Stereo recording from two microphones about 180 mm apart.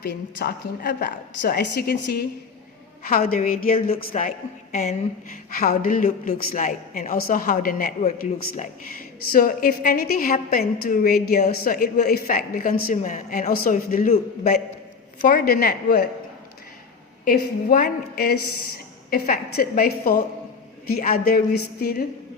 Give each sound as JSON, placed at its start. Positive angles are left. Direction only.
{"t": 0.0, "sound": "a woman's voice", "side_deg": 60}
{"t": 3.1, "sound": "a man's voice", "side_deg": 55}
{"t": 3.8, "sound": "a woman's voice", "side_deg": 35}
{"t": 5.5, "sound": "a man's voice", "side_deg": 50}
{"t": 17.2, "sound": "a man's voice", "side_deg": 50}